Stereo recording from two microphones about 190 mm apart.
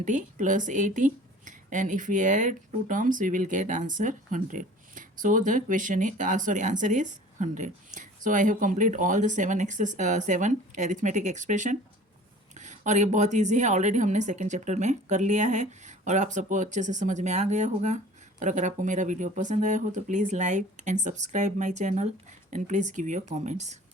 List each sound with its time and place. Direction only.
0.0 s speech: 40° right (ahead or behind)